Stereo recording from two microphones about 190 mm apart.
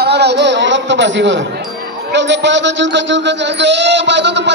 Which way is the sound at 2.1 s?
70° right (ahead or behind).